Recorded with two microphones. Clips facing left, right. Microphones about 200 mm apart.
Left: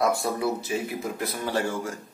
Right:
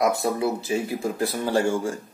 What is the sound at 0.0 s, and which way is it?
Speech, 20° right (ahead or behind).